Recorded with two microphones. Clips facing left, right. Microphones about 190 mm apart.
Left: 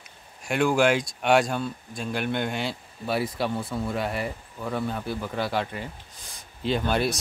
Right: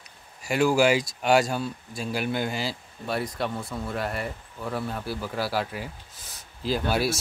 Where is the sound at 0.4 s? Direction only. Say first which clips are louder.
Right 1 dB; 5° right (ahead or behind).